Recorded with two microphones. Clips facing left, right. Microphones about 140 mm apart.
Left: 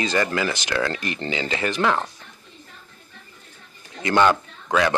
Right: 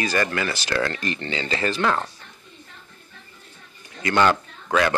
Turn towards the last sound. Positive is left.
turn(degrees=15)  # may be behind; listen again after turning